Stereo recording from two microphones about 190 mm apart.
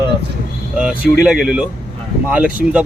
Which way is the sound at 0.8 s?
5° right (ahead or behind).